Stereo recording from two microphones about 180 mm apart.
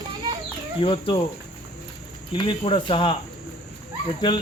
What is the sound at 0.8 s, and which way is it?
Speech, 25° left (ahead or behind).